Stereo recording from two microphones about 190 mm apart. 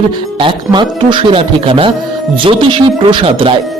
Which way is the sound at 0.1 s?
25° right (ahead or behind).